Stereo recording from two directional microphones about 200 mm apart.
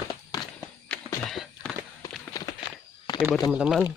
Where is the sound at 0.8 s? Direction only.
5° left (ahead or behind).